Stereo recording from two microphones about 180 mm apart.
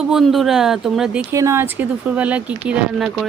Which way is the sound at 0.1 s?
Centre (ahead or behind).